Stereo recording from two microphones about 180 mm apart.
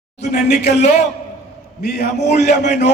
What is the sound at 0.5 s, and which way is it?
Music, 40° left (ahead or behind).